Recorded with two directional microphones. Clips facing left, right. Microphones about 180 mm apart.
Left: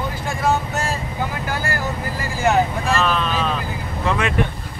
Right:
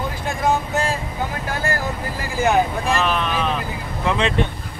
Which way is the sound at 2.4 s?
15° right (ahead or behind).